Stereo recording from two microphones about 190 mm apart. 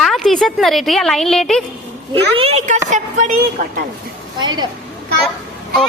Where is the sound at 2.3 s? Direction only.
30° right (ahead or behind).